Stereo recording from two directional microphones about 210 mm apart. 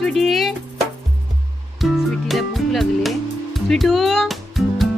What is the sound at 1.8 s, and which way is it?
Music, centre (ahead or behind).